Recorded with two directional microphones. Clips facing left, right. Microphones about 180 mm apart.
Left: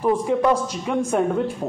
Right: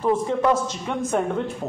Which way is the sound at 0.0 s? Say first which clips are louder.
Left 2 dB; 10° left (ahead or behind).